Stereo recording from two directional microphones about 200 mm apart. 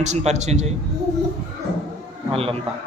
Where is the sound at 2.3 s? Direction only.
30° right (ahead or behind).